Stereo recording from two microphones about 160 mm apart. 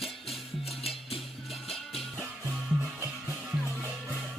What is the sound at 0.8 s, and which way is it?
Music, 40° left (ahead or behind).